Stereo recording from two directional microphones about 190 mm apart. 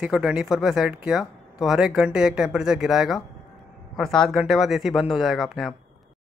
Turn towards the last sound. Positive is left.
turn(degrees=0)  # may be behind; listen again after turning